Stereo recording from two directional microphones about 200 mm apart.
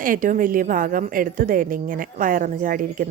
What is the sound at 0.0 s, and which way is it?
A woman's voice, 40° right (ahead or behind).